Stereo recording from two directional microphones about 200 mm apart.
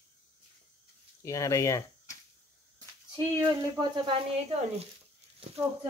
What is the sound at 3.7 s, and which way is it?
Speech, 25° right (ahead or behind).